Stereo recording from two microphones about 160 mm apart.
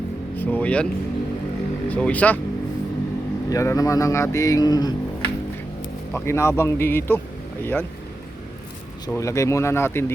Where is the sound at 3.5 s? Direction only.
20° left (ahead or behind).